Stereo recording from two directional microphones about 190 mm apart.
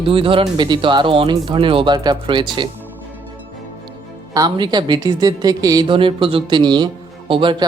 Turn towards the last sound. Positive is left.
turn(degrees=-25)  # may be behind; listen again after turning